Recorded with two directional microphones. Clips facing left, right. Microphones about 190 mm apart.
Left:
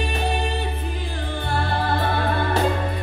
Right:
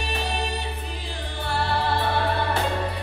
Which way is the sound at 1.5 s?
50° left (ahead or behind).